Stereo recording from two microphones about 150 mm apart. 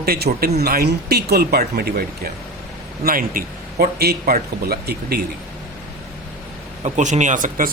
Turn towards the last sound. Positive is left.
turn(degrees=-60)  # may be behind; listen again after turning